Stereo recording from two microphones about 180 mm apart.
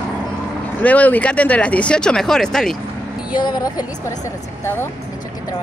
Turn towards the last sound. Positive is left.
turn(degrees=20)  # may be behind; listen again after turning